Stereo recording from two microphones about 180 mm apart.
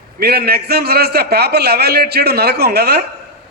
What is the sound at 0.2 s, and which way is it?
A man's voice, 60° right (ahead or behind).